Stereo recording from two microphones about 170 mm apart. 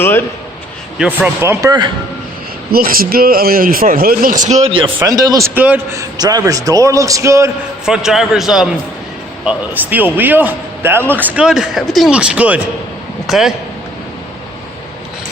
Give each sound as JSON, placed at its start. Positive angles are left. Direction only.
{"t": 0.0, "sound": "a man's voice", "side_deg": 15}
{"t": 0.9, "sound": "a man's voice", "side_deg": -10}
{"t": 2.7, "sound": "a man's voice", "side_deg": -60}
{"t": 4.9, "sound": "a man's voice", "side_deg": -20}
{"t": 5.5, "sound": "a man's voice", "side_deg": -10}
{"t": 6.1, "sound": "a man's voice", "side_deg": -20}
{"t": 7.9, "sound": "a man's voice", "side_deg": 0}